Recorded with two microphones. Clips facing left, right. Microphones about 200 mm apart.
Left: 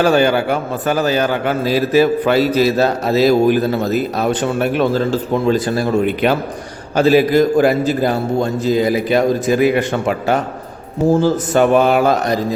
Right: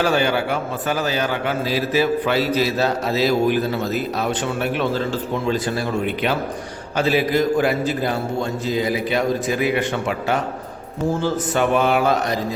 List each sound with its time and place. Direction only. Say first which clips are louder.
0.0 s a man's voice: left 6 dB; 45° left (ahead or behind)